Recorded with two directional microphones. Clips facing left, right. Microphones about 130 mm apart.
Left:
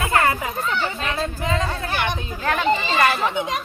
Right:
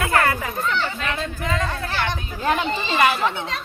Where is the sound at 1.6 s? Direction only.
15° left (ahead or behind).